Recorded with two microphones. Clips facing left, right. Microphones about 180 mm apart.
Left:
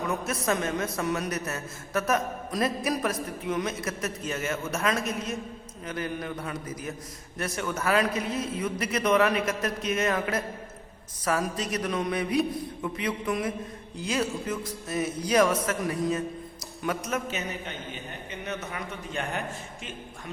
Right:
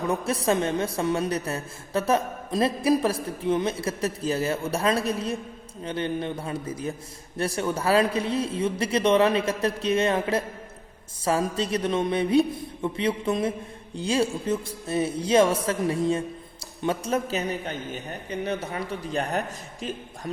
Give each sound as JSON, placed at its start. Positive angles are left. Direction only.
{"t": 0.1, "sound": "a man's voice", "side_deg": -30}